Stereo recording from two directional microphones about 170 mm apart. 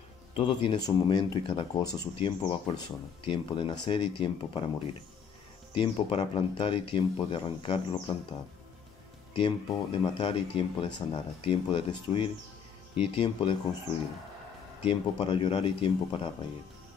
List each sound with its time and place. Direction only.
0.4 s speech: 30° left (ahead or behind)
14.8 s speech: 35° left (ahead or behind)